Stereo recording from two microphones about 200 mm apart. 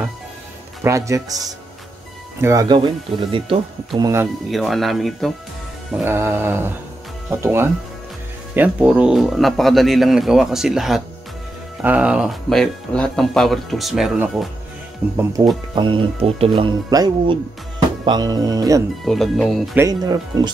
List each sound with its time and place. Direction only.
0.8 s mantra: 15° right (ahead or behind)
2.4 s speech: 20° right (ahead or behind)
4.5 s speech: centre (ahead or behind)
5.9 s mantra: 5° right (ahead or behind)
8.5 s speech: 5° right (ahead or behind)
15.4 s mantra: 15° right (ahead or behind)
15.7 s speech: 25° right (ahead or behind)
19.0 s speech: centre (ahead or behind)
19.9 s speech: 20° right (ahead or behind)